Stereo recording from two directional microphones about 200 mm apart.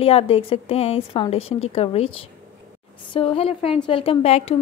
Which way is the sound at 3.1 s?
25° left (ahead or behind).